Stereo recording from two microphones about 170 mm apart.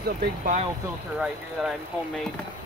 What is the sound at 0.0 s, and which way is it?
Speech, 65° right (ahead or behind).